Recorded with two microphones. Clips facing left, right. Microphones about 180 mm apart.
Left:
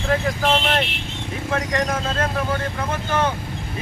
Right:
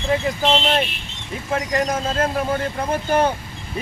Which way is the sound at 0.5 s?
25° right (ahead or behind).